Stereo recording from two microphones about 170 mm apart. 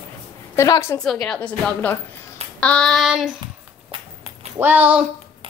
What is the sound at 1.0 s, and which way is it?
A woman's voice, centre (ahead or behind).